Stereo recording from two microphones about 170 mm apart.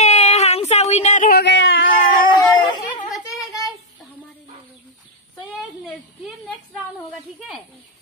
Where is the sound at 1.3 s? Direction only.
85° left.